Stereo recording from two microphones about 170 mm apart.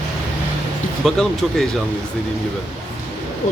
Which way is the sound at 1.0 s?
Centre (ahead or behind).